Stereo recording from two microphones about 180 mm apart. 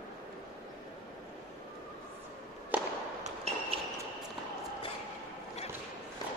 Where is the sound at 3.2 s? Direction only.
35° right (ahead or behind).